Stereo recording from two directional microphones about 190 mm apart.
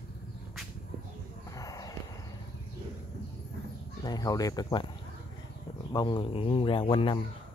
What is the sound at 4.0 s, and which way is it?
Speech, 20° left (ahead or behind).